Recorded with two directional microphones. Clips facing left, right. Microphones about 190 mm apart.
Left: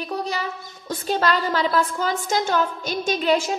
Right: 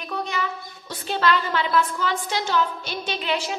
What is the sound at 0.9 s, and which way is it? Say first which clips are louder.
A woman's voice: left 1 dB; 40° left (ahead or behind).